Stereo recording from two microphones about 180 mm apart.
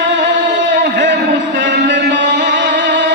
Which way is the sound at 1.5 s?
80° right.